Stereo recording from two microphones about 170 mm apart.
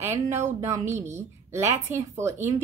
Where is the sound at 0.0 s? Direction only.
15° right (ahead or behind).